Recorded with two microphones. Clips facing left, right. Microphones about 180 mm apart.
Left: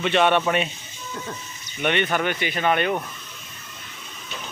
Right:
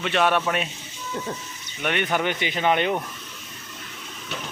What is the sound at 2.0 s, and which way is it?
Speech, 15° right (ahead or behind).